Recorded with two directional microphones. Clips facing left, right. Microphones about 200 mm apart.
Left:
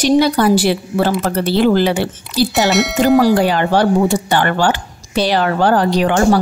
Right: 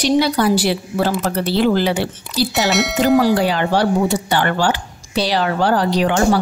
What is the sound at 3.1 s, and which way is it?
Speech, 45° left (ahead or behind).